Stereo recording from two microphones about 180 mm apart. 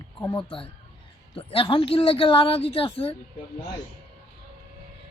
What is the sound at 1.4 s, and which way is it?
Speech, 30° left (ahead or behind).